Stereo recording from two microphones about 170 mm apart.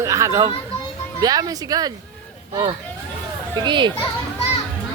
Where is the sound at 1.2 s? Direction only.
20° right (ahead or behind).